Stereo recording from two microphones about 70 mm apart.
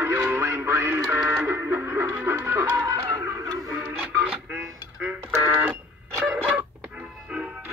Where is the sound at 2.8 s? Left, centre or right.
Right.